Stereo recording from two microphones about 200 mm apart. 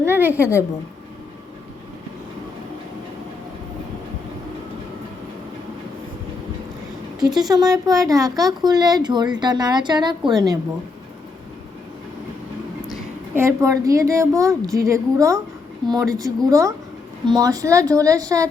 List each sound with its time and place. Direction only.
0.0 s a sound: 10° right (ahead or behind)
0.3 s a woman's voice: 15° left (ahead or behind)
7.4 s speech: 15° right (ahead or behind)
13.3 s a woman's voice: 15° right (ahead or behind)